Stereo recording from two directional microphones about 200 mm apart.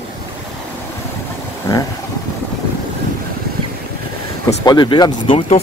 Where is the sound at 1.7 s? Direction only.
15° left (ahead or behind).